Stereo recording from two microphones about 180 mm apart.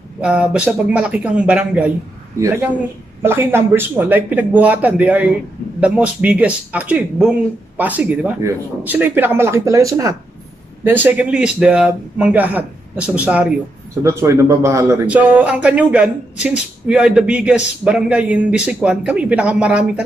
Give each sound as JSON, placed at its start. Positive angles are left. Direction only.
{"t": 0.2, "sound": "a man's voice", "side_deg": -5}
{"t": 3.2, "sound": "a man's voice", "side_deg": -10}